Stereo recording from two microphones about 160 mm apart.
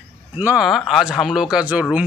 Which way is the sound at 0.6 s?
Centre (ahead or behind).